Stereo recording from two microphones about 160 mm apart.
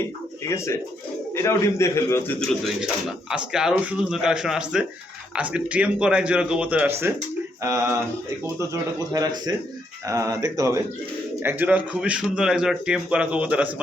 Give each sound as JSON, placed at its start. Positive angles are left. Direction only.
{"t": 0.5, "sound": "a man's voice", "side_deg": 15}
{"t": 2.5, "sound": "a man's voice", "side_deg": 0}